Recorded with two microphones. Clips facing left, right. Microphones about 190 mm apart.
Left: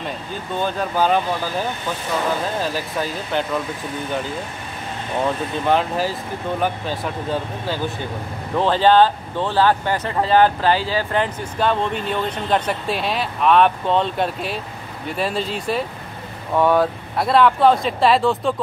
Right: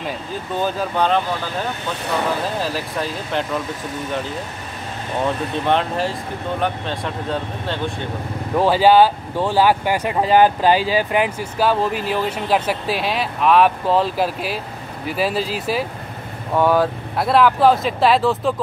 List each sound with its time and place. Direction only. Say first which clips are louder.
0.6 s speech: even; 5° right (ahead or behind)
2.6 s speech: even; centre (ahead or behind)
5.5 s speech: even; centre (ahead or behind)
8.5 s speech: right 2 dB; 10° right (ahead or behind)